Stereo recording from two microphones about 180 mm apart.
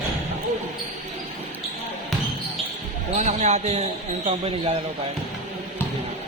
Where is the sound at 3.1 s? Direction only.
40° right (ahead or behind).